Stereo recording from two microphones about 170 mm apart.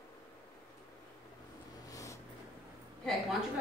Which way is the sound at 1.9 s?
20° left (ahead or behind).